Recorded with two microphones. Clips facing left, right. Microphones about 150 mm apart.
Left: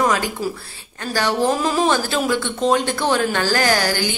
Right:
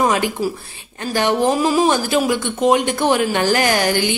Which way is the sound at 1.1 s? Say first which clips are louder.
Right 2 dB; 20° right (ahead or behind).